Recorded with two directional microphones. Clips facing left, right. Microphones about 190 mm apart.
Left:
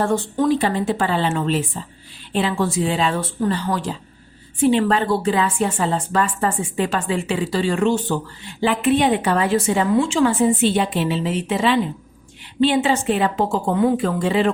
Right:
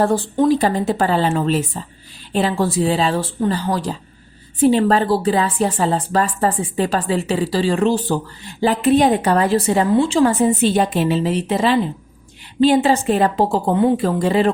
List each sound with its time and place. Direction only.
0.0 s a woman's voice: 35° right (ahead or behind)